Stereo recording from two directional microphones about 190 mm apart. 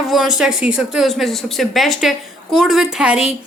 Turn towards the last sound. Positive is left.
turn(degrees=-5)  # may be behind; listen again after turning